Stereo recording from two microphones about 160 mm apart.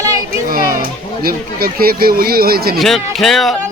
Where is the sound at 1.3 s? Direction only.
70° right (ahead or behind).